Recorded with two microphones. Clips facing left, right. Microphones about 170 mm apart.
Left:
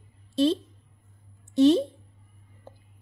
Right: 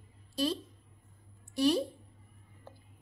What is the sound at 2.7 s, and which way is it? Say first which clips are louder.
Music: left 4 dB; 20° left (ahead or behind).